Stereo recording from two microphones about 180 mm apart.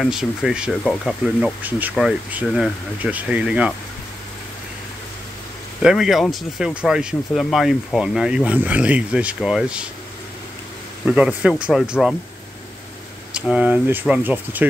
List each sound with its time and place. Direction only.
0.0 s speech: centre (ahead or behind)
5.8 s speech: 5° right (ahead or behind)
11.1 s speech: 5° right (ahead or behind)
13.3 s speech: 5° right (ahead or behind)